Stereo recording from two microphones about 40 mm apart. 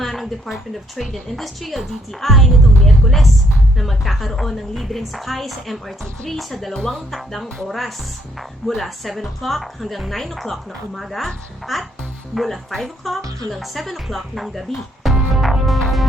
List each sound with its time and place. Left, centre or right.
0.0 s speech: centre
6.7 s speech: centre
7.7 s speech: centre
15.0 s music: centre